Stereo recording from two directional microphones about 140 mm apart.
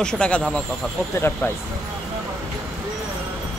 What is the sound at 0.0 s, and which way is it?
Speech, 5° left (ahead or behind).